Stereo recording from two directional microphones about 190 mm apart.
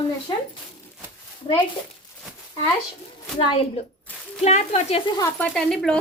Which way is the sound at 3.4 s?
25° left (ahead or behind).